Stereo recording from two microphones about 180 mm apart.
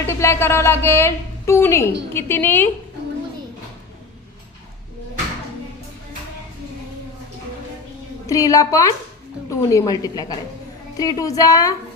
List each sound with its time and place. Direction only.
0.1 s a woman's voice: 15° left (ahead or behind)
8.3 s a woman's voice: 20° left (ahead or behind)